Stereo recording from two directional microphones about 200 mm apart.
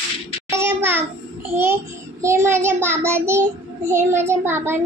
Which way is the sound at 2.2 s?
15° right (ahead or behind).